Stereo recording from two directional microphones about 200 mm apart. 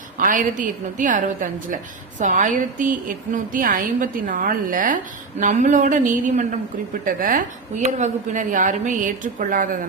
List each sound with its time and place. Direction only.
0.2 s a woman's voice: 40° right (ahead or behind)